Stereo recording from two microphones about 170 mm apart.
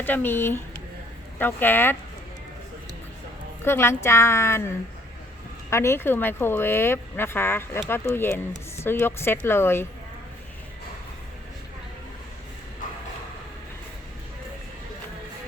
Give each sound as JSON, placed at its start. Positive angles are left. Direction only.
{"t": 0.0, "sound": "speech", "side_deg": 10}
{"t": 3.6, "sound": "speech", "side_deg": 15}
{"t": 5.7, "sound": "speech", "side_deg": 15}